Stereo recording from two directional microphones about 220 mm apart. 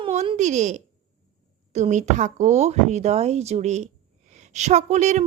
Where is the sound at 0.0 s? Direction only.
25° right (ahead or behind).